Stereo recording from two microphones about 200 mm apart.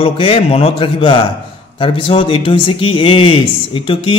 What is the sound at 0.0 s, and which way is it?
Speech, 30° left (ahead or behind).